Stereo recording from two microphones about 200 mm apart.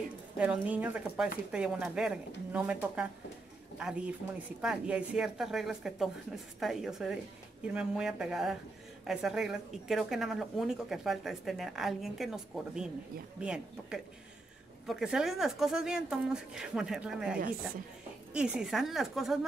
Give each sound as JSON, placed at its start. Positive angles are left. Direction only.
{"t": 0.4, "sound": "speech", "side_deg": -5}
{"t": 4.6, "sound": "speech", "side_deg": -5}